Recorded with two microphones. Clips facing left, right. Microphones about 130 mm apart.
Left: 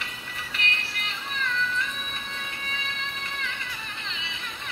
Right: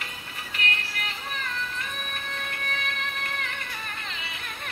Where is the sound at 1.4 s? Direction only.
45° right (ahead or behind).